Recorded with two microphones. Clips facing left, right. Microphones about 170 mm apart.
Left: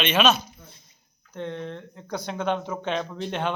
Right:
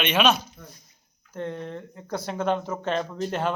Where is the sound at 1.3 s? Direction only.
5° right (ahead or behind).